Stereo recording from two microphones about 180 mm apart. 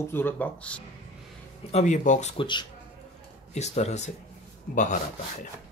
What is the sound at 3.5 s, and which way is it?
Speech, 40° left (ahead or behind).